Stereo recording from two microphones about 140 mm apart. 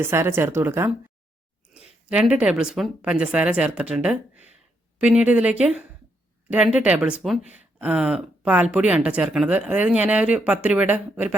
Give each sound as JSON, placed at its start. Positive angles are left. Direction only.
{"t": 0.0, "sound": "speech", "side_deg": -20}